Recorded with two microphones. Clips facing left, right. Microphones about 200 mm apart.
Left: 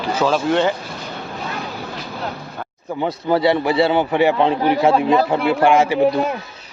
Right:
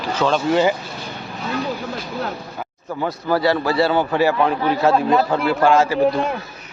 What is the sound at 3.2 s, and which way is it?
A man's voice, 20° left (ahead or behind).